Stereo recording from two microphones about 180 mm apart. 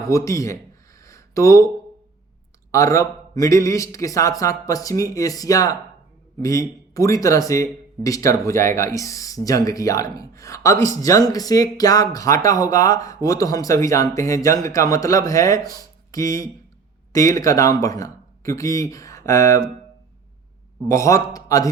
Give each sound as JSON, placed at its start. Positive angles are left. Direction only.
{"t": 0.0, "sound": "speech", "side_deg": 15}
{"t": 1.0, "sound": "a sound", "side_deg": 15}
{"t": 2.7, "sound": "speech", "side_deg": 15}
{"t": 20.8, "sound": "speech", "side_deg": 15}